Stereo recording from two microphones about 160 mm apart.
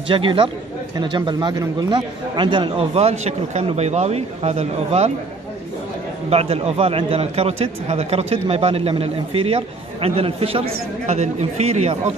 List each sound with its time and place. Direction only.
0.1 s a man's voice: 30° right (ahead or behind)
6.3 s a man's voice: 40° right (ahead or behind)